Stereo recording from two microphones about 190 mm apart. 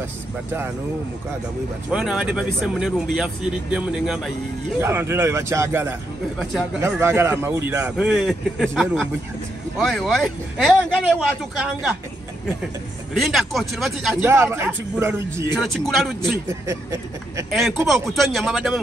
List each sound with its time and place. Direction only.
1.9 s a man's voice: 5° right (ahead or behind)
13.1 s a man's voice: centre (ahead or behind)
14.3 s a man's voice: 10° right (ahead or behind)
15.5 s a man's voice: centre (ahead or behind)
16.4 s a man's voice: 15° right (ahead or behind)
17.5 s a man's voice: centre (ahead or behind)